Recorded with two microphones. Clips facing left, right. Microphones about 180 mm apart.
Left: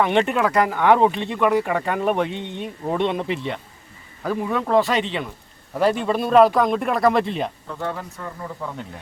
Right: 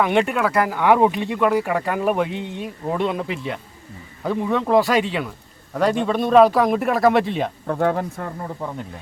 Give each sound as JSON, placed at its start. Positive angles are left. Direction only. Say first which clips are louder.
{"t": 0.0, "sound": "speech", "louder": "even", "side_deg": -10}
{"t": 5.7, "sound": "speech", "louder": "even", "side_deg": 5}
{"t": 7.7, "sound": "speech", "louder": "right 8 dB", "side_deg": -55}